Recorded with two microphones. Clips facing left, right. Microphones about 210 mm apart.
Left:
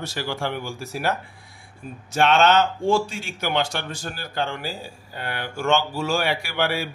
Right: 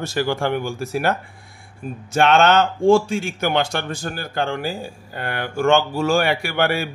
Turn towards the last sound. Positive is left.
turn(degrees=-55)  # may be behind; listen again after turning